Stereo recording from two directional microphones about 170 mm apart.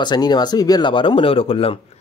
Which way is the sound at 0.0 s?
25° left (ahead or behind).